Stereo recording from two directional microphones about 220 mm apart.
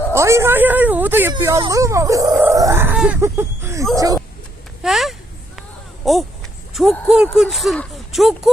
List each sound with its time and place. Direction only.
0.1 s speech: 10° right (ahead or behind)
4.8 s speech: centre (ahead or behind)
6.1 s a sound: centre (ahead or behind)
7.3 s speech: centre (ahead or behind)